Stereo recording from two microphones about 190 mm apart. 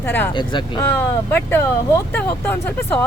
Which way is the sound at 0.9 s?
10° left (ahead or behind).